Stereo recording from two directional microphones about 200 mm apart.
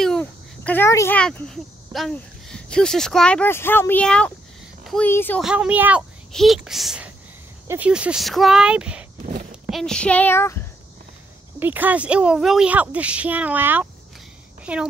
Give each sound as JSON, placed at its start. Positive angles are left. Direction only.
{"t": 0.0, "sound": "speech", "side_deg": 5}
{"t": 5.4, "sound": "a woman's voice", "side_deg": -5}
{"t": 9.7, "sound": "child singing", "side_deg": 0}
{"t": 11.6, "sound": "speech", "side_deg": -10}